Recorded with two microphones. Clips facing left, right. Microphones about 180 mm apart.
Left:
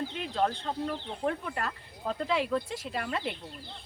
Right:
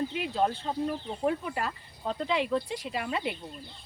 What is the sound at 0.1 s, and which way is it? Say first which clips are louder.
Speech: right 2 dB; 10° right (ahead or behind).